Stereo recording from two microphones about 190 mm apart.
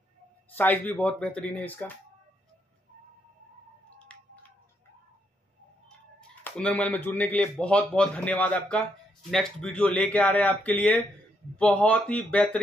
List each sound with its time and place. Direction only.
0.6 s a man's voice: 10° left (ahead or behind)
4.1 s a sound: 5° left (ahead or behind)
6.4 s a man's voice: 5° left (ahead or behind)